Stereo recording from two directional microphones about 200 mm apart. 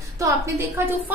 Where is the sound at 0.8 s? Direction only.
10° right (ahead or behind).